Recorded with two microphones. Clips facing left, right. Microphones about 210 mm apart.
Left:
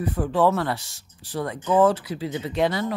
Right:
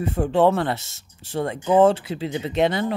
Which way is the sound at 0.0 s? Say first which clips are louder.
Right 3 dB; 25° right (ahead or behind).